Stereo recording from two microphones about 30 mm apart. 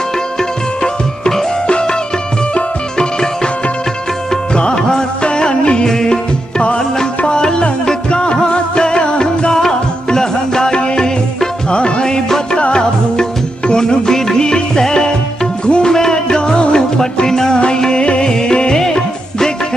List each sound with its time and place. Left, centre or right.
1.7 s music: left
4.6 s music: left
7.2 s music: left
9.5 s music: centre
11.7 s music: left
15.6 s music: left
15.9 s music: left
18.0 s music: left
18.7 s music: left